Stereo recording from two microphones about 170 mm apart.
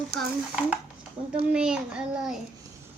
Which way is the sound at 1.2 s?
40° right (ahead or behind).